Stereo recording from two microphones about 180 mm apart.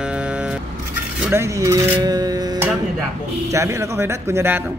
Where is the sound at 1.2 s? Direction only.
15° right (ahead or behind).